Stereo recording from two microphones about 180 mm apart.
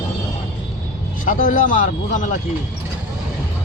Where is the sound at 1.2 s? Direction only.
50° left (ahead or behind).